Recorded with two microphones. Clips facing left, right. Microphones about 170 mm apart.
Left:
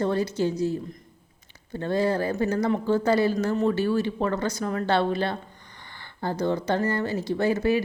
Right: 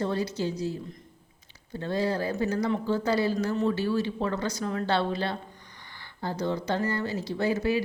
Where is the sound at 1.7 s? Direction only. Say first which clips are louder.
Left 4 dB; 55° left (ahead or behind).